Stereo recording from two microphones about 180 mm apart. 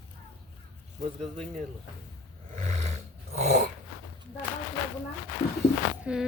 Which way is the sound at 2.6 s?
35° right (ahead or behind).